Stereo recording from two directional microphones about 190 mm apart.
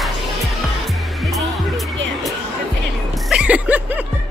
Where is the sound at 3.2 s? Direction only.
5° right (ahead or behind).